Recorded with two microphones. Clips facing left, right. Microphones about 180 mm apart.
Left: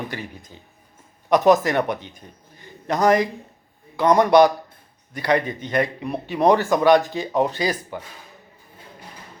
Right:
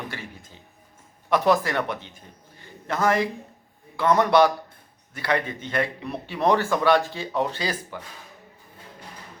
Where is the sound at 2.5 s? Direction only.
15° left (ahead or behind).